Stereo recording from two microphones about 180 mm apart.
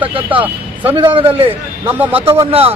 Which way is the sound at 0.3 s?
10° right (ahead or behind).